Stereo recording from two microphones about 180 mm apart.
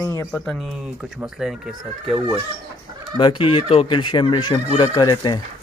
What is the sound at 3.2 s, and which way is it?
Speech, 25° left (ahead or behind).